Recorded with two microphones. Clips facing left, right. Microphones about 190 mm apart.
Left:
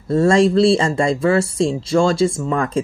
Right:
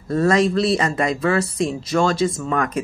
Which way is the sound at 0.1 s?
30° left (ahead or behind).